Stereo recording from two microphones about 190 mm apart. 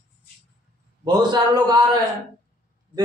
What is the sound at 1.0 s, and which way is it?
Speech, 20° right (ahead or behind).